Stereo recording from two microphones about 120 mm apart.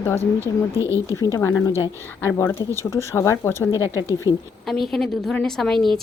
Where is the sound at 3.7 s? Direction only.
25° right (ahead or behind).